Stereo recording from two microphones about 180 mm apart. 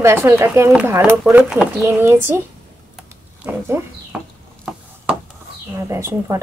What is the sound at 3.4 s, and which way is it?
Speech, 15° right (ahead or behind).